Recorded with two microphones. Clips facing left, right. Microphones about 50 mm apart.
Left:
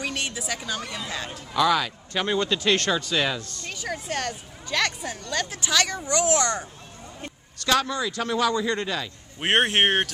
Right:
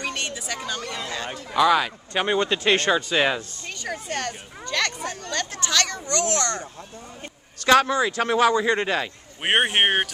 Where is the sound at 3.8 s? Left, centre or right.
Centre.